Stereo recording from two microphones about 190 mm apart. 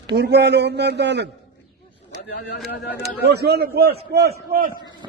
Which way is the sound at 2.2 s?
65° left (ahead or behind).